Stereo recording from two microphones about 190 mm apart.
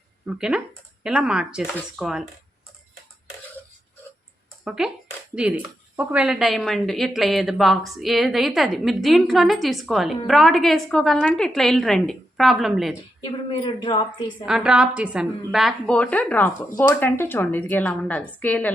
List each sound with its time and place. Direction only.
0.3 s a woman's voice: 5° right (ahead or behind)
4.6 s a woman's voice: 5° right (ahead or behind)
13.2 s a woman's voice: 25° left (ahead or behind)
14.4 s a woman's voice: 5° right (ahead or behind)